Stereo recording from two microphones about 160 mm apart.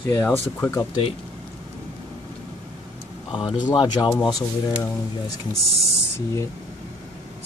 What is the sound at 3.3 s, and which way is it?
Speech, 35° left (ahead or behind).